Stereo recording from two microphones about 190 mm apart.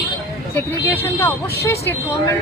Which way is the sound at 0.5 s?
10° left (ahead or behind).